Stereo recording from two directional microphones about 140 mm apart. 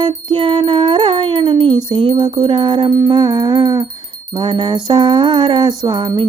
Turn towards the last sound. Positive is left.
turn(degrees=-30)  # may be behind; listen again after turning